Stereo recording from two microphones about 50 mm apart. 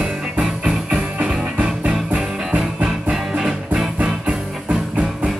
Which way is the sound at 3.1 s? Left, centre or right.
Centre.